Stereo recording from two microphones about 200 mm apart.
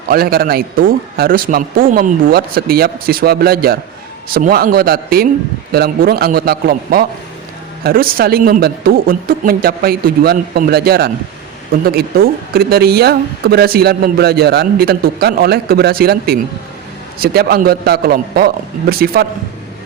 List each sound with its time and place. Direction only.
0.1 s speech: 50° right (ahead or behind)